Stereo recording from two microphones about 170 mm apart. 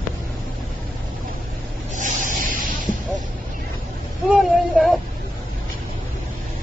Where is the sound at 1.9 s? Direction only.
50° right (ahead or behind).